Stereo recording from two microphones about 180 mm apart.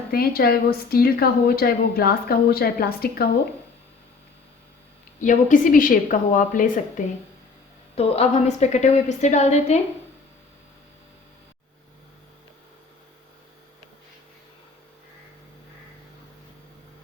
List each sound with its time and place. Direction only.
0.1 s a woman's voice: 55° left (ahead or behind)
5.2 s a woman's voice: 45° left (ahead or behind)
7.9 s a woman's voice: 35° left (ahead or behind)